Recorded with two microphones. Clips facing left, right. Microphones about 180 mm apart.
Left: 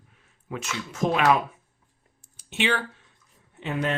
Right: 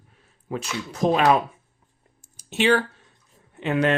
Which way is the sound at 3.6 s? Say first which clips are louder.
Right 6 dB; 70° right (ahead or behind).